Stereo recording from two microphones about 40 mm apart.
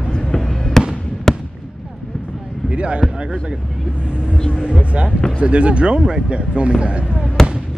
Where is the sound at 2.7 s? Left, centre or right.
Right.